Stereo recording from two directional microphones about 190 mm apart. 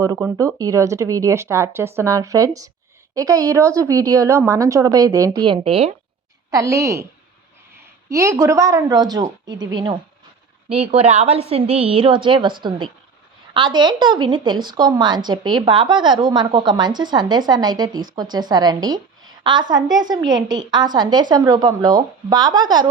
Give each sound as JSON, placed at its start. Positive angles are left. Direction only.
{"t": 0.0, "sound": "a woman's voice", "side_deg": -15}
{"t": 6.5, "sound": "a woman's voice", "side_deg": -15}
{"t": 8.1, "sound": "a woman's voice", "side_deg": -15}